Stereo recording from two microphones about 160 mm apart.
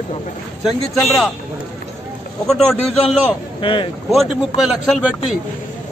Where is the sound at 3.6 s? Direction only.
30° left (ahead or behind).